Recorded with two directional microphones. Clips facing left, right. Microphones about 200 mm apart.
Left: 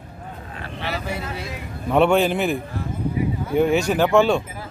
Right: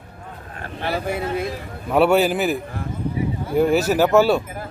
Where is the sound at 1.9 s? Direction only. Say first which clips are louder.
Right 1 dB; 5° right (ahead or behind).